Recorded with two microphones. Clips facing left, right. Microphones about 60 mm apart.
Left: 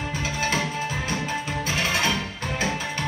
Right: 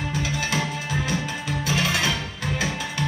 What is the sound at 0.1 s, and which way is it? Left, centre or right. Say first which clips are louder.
Music: left 2 dB; left.